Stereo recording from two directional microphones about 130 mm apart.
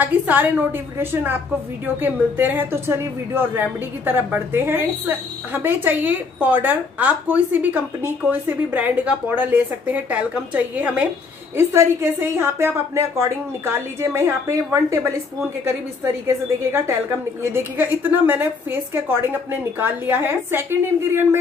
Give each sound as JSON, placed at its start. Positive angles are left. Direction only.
{"t": 0.0, "sound": "a woman's voice", "side_deg": -15}
{"t": 17.4, "sound": "speech", "side_deg": -20}